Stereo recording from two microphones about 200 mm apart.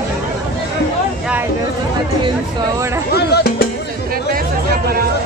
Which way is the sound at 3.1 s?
50° left (ahead or behind).